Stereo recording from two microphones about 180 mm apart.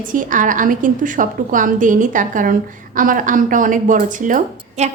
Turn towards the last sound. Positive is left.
turn(degrees=-40)  # may be behind; listen again after turning